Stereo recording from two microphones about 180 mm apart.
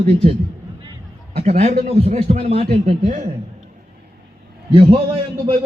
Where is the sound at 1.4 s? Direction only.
35° right (ahead or behind).